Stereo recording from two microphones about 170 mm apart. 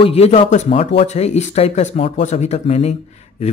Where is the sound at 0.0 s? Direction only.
35° left (ahead or behind).